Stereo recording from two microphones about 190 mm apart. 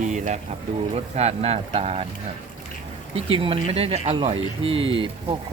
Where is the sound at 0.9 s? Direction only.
35° right (ahead or behind).